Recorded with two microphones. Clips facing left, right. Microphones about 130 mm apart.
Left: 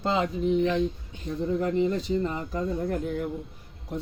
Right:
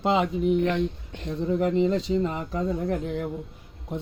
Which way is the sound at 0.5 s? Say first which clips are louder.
Even; 65° right (ahead or behind).